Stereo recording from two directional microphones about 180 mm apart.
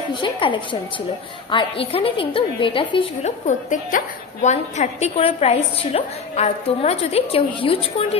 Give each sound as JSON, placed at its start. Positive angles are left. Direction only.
{"t": 0.1, "sound": "a woman's voice", "side_deg": 25}